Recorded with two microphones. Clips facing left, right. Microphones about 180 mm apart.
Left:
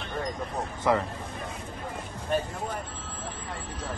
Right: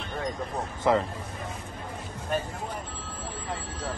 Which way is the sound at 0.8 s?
20° right (ahead or behind).